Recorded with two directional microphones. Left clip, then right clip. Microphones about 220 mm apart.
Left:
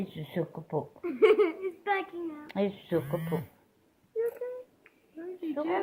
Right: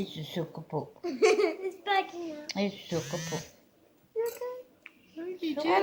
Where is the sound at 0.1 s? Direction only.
40° left (ahead or behind).